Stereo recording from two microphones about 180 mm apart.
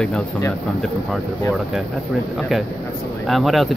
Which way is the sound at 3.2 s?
Centre (ahead or behind).